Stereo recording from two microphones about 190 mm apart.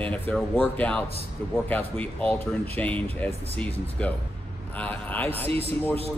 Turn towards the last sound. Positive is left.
turn(degrees=-30)  # may be behind; listen again after turning